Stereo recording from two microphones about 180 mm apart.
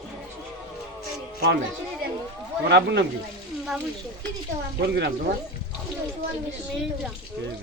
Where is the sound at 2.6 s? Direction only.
70° right (ahead or behind).